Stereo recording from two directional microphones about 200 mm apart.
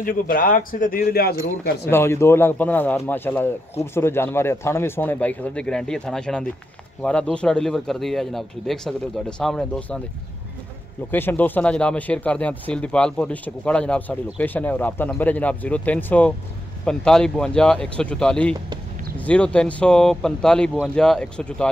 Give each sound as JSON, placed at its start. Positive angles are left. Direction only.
{"t": 0.0, "sound": "speech", "side_deg": 45}
{"t": 1.9, "sound": "speech", "side_deg": 10}
{"t": 11.1, "sound": "speech", "side_deg": 10}